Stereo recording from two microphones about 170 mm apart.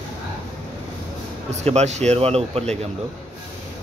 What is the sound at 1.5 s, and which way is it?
Speech, 40° right (ahead or behind).